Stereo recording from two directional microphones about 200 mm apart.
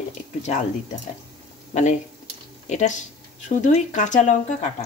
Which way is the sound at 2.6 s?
35° left (ahead or behind).